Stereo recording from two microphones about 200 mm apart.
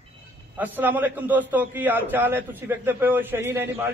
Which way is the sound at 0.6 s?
10° right (ahead or behind).